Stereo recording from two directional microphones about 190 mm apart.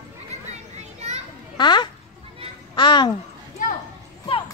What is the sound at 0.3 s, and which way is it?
Children playing, 35° right (ahead or behind).